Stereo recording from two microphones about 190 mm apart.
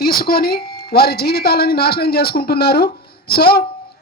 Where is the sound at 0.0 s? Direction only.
50° left (ahead or behind).